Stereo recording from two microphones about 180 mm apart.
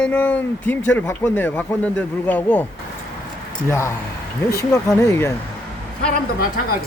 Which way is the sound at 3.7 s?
15° left (ahead or behind).